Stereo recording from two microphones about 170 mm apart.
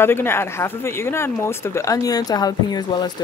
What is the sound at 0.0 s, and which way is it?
Speech, 15° left (ahead or behind).